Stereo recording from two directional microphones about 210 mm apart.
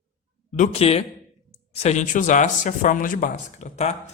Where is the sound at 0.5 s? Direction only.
30° left (ahead or behind).